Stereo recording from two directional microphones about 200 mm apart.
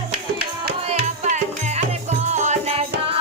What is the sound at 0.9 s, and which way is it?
Music, 35° right (ahead or behind).